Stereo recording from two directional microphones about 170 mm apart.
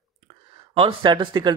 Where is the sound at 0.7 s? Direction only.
30° right (ahead or behind).